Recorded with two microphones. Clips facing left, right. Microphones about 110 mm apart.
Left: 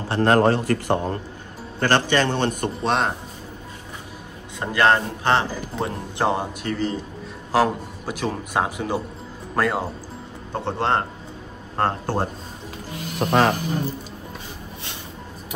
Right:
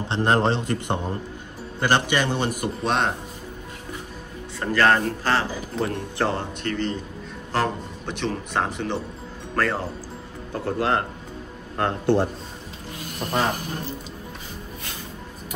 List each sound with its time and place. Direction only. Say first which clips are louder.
0.1 s a man's voice: left 4 dB; 20° right (ahead or behind); by 3.1 s centre (ahead or behind)
4.6 s a man's voice: left 1 dB; 15° left (ahead or behind)
6.6 s a man's voice: left 1 dB; 5° left (ahead or behind)
10.5 s a man's voice: left 1 dB; 30° left (ahead or behind)
11.8 s speech: right 2 dB; 40° left (ahead or behind)
13.2 s speech: left 7 dB; 75° left (ahead or behind)